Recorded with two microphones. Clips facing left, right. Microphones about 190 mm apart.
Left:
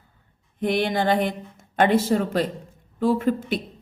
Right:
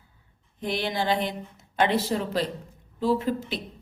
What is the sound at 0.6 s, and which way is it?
A woman's voice, 55° left (ahead or behind).